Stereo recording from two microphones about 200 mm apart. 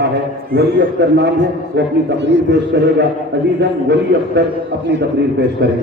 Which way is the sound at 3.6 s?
60° right (ahead or behind).